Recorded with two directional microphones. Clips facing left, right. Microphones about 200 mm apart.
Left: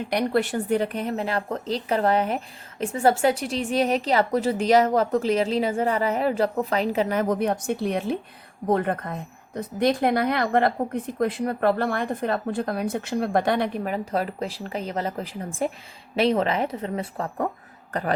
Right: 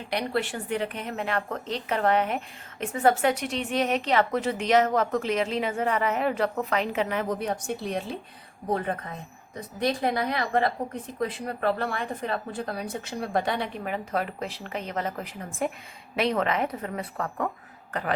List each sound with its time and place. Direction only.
0.1 s a woman's voice: 45° left (ahead or behind)
11.2 s speech: 50° left (ahead or behind); by 17.5 s 30° left (ahead or behind)